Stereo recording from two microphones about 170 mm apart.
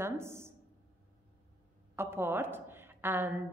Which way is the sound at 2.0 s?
15° right (ahead or behind).